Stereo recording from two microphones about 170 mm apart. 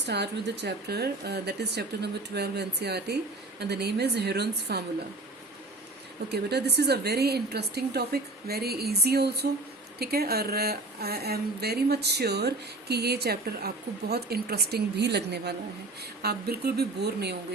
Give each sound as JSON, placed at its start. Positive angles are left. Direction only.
{"t": 0.0, "sound": "a woman's voice", "side_deg": -85}
{"t": 6.2, "sound": "a woman's voice", "side_deg": -75}